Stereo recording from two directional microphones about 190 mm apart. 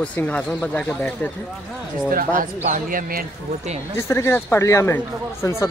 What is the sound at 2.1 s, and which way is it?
Speech, 45° right (ahead or behind).